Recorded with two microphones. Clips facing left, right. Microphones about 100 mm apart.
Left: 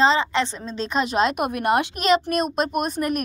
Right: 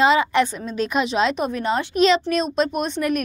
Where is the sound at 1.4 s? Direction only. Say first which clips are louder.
Left 2 dB; 60° left (ahead or behind).